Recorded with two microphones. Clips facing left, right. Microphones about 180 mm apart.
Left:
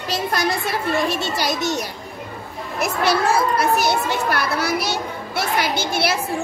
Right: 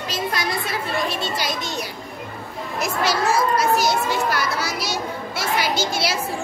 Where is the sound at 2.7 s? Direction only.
60° left (ahead or behind).